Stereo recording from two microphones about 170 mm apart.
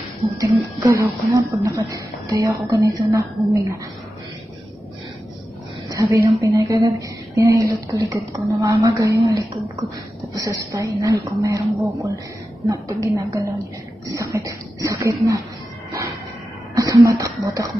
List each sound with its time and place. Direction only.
0.4 s a woman's voice: 20° right (ahead or behind)
5.9 s a woman's voice: 20° right (ahead or behind)
16.7 s speech: 20° right (ahead or behind)